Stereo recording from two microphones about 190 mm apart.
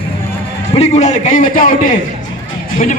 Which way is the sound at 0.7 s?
35° left (ahead or behind).